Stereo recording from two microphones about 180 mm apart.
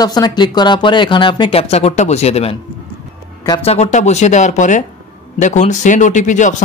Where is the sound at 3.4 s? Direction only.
25° left (ahead or behind).